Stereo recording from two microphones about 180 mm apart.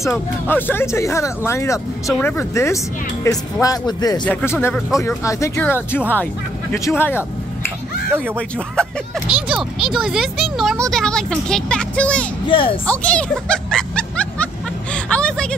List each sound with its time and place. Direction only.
0.1 s speech: 10° left (ahead or behind)
4.2 s speech: 10° left (ahead or behind)
7.0 s vehicle: 10° left (ahead or behind)
8.1 s speech: 10° right (ahead or behind)
8.4 s speech: 5° left (ahead or behind)
12.4 s speech: 30° left (ahead or behind)
12.8 s music: 5° left (ahead or behind)